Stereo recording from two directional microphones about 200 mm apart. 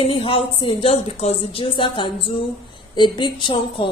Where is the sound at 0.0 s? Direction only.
25° left (ahead or behind).